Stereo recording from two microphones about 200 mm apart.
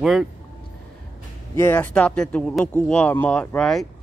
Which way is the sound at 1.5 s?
10° left (ahead or behind).